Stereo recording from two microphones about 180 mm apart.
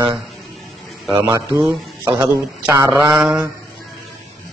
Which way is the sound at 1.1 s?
20° right (ahead or behind).